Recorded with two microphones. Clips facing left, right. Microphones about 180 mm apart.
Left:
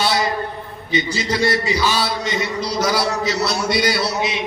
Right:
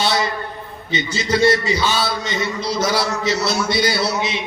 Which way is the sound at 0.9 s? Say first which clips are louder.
Even; 25° right (ahead or behind).